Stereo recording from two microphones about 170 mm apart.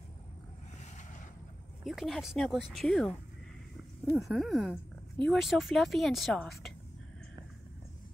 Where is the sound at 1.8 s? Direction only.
Centre (ahead or behind).